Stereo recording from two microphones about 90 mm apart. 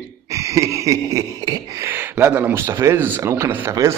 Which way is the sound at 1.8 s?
25° right (ahead or behind).